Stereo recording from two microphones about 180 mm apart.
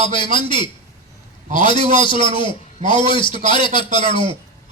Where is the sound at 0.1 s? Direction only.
30° left (ahead or behind).